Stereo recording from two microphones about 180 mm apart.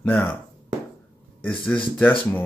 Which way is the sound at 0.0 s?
10° left (ahead or behind).